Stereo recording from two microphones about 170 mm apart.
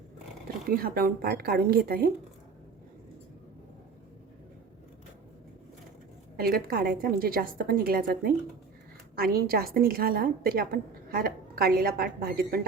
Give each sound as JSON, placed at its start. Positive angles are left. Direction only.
{"t": 0.7, "sound": "a woman's voice", "side_deg": -60}
{"t": 6.4, "sound": "a woman's voice", "side_deg": -60}